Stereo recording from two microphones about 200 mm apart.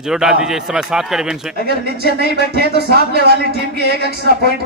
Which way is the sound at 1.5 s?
50° right (ahead or behind).